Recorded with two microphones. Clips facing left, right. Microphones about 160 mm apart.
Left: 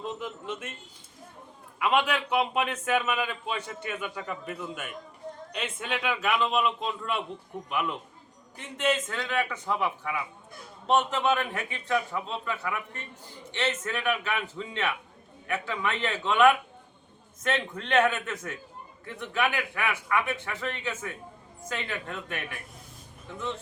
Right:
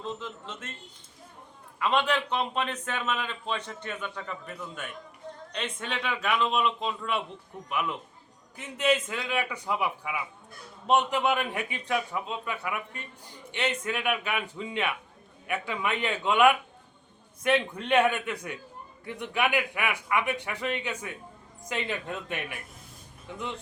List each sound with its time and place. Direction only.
0.0 s a man's voice: 10° left (ahead or behind)
1.8 s a man's voice: 10° left (ahead or behind); by 22.5 s 20° right (ahead or behind)